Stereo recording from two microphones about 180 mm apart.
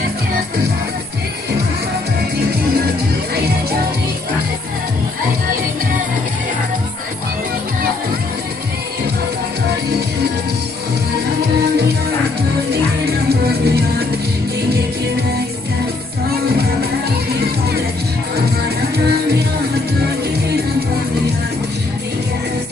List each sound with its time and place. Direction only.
13.0 s music: 60° right (ahead or behind)